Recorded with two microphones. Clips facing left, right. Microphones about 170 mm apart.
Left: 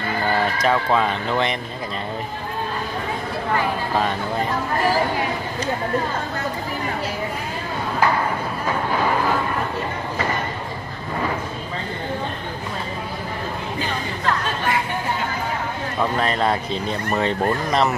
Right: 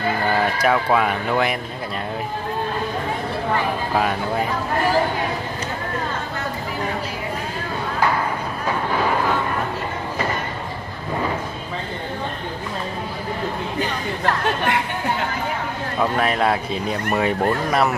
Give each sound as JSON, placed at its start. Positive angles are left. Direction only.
{"t": 0.6, "sound": "speech", "side_deg": -10}
{"t": 3.9, "sound": "speech", "side_deg": -10}
{"t": 14.2, "sound": "chatter", "side_deg": -60}
{"t": 16.0, "sound": "speech", "side_deg": -5}